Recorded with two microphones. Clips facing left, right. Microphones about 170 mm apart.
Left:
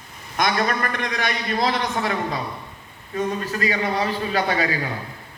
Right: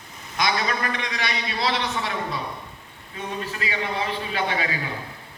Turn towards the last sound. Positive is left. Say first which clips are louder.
# left 4 dB
turn(degrees=40)  # may be behind; listen again after turning